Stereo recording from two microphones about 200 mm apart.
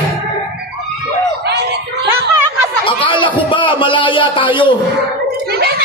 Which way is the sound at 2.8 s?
25° left (ahead or behind).